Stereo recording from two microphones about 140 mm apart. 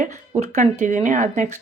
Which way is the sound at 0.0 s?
60° right (ahead or behind).